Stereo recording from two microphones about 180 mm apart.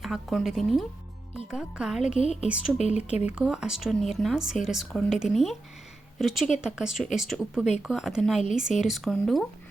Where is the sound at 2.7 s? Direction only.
40° left (ahead or behind).